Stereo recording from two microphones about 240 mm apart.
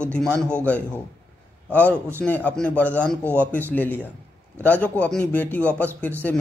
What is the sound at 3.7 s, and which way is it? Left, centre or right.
A man's voice, centre.